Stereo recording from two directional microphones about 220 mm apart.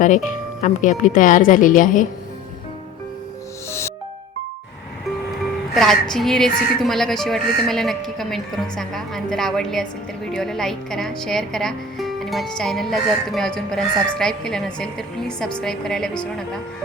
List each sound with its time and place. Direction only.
0.3 s speech: 35° left (ahead or behind)
3.7 s music: 10° left (ahead or behind)
5.7 s speech: centre (ahead or behind)